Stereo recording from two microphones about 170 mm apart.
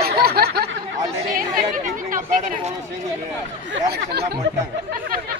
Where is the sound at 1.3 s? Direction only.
50° right (ahead or behind).